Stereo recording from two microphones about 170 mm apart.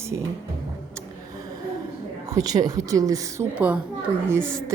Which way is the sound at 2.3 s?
20° right (ahead or behind).